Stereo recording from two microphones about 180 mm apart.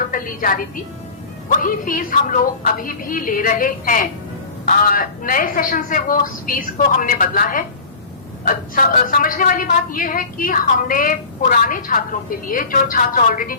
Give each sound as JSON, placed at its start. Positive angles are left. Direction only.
{"t": 0.1, "sound": "music", "side_deg": 50}
{"t": 1.5, "sound": "a woman's voice", "side_deg": 50}